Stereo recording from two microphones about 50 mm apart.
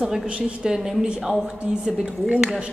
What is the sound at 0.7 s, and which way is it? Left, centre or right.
Speech, centre.